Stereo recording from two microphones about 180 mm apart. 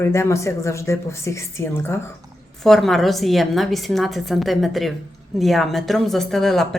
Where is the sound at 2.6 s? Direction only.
Centre (ahead or behind).